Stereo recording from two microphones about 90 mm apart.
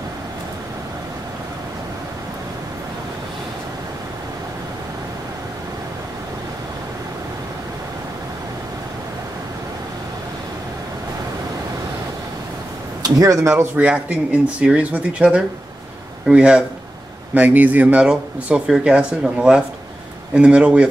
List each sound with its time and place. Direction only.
13.0 s speech: 40° right (ahead or behind)
13.6 s speech: 15° right (ahead or behind)